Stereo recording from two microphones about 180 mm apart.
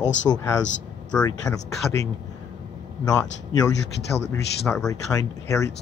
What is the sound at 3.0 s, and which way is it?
Speech, 20° left (ahead or behind).